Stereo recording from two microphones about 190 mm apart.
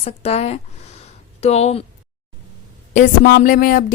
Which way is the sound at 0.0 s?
35° left (ahead or behind).